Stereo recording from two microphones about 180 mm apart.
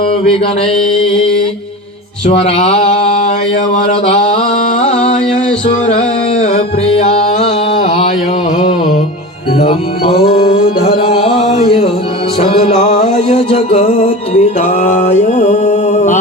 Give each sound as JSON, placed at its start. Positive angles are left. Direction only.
{"t": 2.4, "sound": "mantra", "side_deg": 35}
{"t": 4.8, "sound": "music", "side_deg": 35}
{"t": 9.6, "sound": "music", "side_deg": 30}
{"t": 10.2, "sound": "music", "side_deg": 55}
{"t": 10.9, "sound": "a sound", "side_deg": 30}
{"t": 12.4, "sound": "music", "side_deg": 35}
{"t": 14.8, "sound": "mantra", "side_deg": 40}